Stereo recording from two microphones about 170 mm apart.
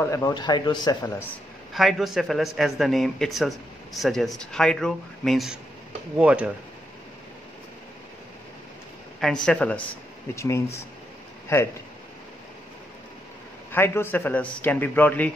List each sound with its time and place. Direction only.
0.0 s speech: 20° left (ahead or behind)
1.7 s a man's voice: centre (ahead or behind)
9.2 s a man's voice: 5° left (ahead or behind)
10.3 s a man's voice: 15° left (ahead or behind)
13.7 s a man's voice: 15° left (ahead or behind)